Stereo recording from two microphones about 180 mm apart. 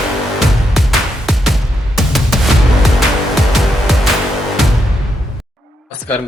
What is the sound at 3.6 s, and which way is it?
Music, centre (ahead or behind).